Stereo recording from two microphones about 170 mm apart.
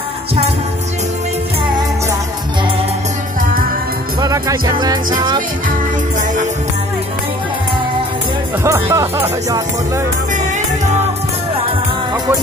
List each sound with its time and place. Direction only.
4.2 s music: 20° right (ahead or behind)
8.6 s speech: 15° right (ahead or behind)